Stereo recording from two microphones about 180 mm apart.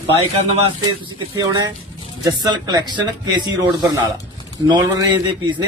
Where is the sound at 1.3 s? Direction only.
20° right (ahead or behind).